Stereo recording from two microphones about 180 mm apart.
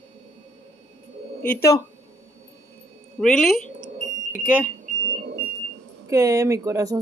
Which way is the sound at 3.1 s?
Centre (ahead or behind).